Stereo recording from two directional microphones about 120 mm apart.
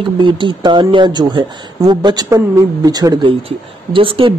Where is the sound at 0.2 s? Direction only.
40° right (ahead or behind).